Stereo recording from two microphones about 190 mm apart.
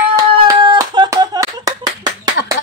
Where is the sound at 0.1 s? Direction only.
20° right (ahead or behind).